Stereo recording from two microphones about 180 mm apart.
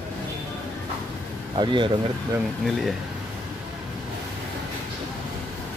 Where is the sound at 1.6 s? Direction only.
25° right (ahead or behind).